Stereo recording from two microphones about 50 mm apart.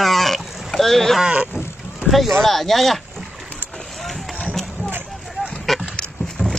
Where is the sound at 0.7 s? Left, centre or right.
Centre.